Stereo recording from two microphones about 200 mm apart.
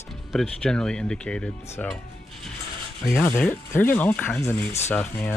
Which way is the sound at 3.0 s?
Centre (ahead or behind).